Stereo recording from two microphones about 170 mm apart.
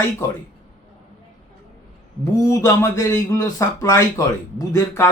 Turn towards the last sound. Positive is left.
turn(degrees=15)  # may be behind; listen again after turning